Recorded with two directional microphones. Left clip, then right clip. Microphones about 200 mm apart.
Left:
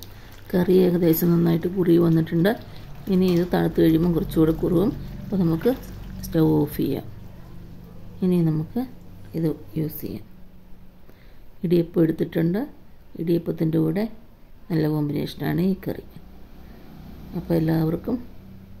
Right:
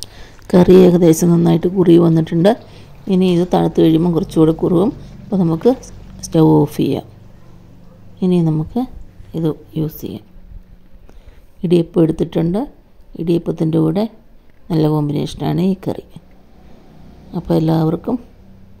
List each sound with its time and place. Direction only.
0.0 s a sound: 35° right (ahead or behind)
1.3 s speech: 30° right (ahead or behind)
8.2 s speech: 25° right (ahead or behind)
11.6 s speech: 25° right (ahead or behind)
17.3 s speech: 30° right (ahead or behind)